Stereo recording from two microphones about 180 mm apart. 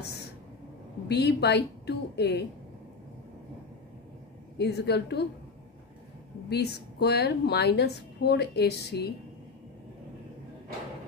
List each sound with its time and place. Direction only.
1.0 s a woman's voice: 65° left (ahead or behind)
4.6 s a woman's voice: 65° left (ahead or behind)
6.5 s a woman's voice: 65° left (ahead or behind)